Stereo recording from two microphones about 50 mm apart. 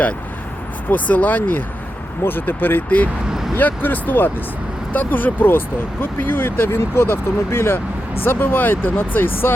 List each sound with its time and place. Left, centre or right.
0.9 s speech: left